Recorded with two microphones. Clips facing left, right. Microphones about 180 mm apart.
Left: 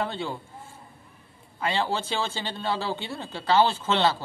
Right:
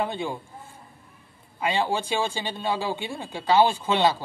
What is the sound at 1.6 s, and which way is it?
Speech, 15° right (ahead or behind).